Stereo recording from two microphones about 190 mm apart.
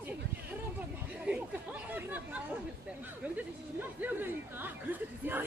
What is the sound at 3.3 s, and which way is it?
Chatter, 10° right (ahead or behind).